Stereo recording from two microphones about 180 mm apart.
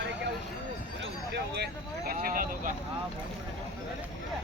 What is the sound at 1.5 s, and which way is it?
Vehicle, 60° right (ahead or behind).